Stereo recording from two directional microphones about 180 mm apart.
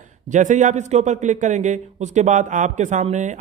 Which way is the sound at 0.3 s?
45° right (ahead or behind).